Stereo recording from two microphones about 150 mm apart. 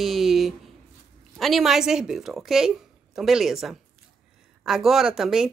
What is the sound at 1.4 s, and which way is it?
Speech, centre (ahead or behind).